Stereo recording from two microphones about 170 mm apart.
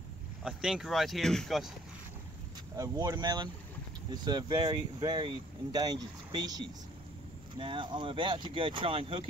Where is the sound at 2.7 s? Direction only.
20° right (ahead or behind).